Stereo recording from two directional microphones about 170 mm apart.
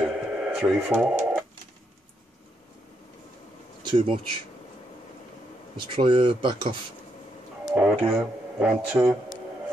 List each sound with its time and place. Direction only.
0.0 s radio: 5° right (ahead or behind)
0.7 s a man's voice: 10° right (ahead or behind)
3.8 s speech: 30° right (ahead or behind)
5.9 s speech: 30° right (ahead or behind)
7.7 s a man's voice: 10° right (ahead or behind)